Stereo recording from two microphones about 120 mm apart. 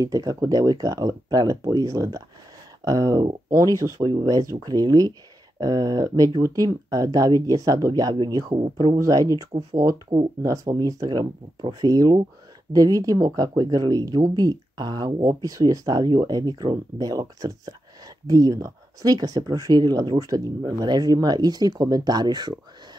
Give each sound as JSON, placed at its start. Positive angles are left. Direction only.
{"t": 0.0, "sound": "speech", "side_deg": -30}
{"t": 8.9, "sound": "speech", "side_deg": -30}
{"t": 9.5, "sound": "speech", "side_deg": -60}
{"t": 10.0, "sound": "speech", "side_deg": -35}